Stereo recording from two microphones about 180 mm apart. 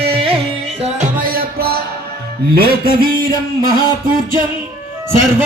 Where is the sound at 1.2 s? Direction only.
55° right (ahead or behind).